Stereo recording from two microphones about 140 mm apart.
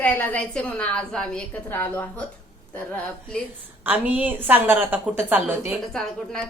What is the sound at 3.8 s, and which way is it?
A woman's voice, 10° right (ahead or behind).